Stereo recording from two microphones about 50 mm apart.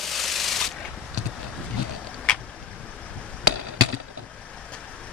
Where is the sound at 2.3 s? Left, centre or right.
Centre.